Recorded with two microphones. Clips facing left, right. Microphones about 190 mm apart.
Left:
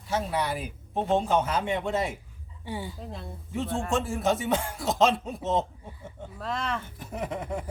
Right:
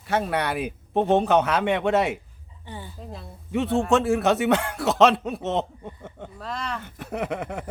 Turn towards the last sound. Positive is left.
turn(degrees=-70)  # may be behind; listen again after turning